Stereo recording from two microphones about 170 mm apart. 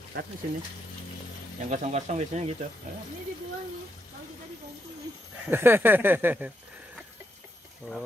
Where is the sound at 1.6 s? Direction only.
45° right (ahead or behind).